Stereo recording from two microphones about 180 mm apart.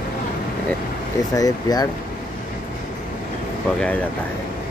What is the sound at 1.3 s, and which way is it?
Speech, 20° left (ahead or behind).